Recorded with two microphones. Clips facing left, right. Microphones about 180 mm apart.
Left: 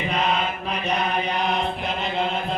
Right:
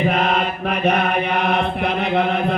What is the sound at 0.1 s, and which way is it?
Mantra, 55° right (ahead or behind).